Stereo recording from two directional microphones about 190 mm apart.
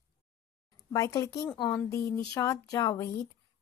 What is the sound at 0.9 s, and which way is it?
Speech, 15° left (ahead or behind).